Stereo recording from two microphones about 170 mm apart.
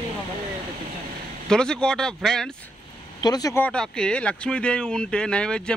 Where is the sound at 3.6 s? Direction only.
5° left (ahead or behind).